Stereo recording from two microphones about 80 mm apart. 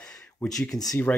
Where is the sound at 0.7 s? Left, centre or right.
Left.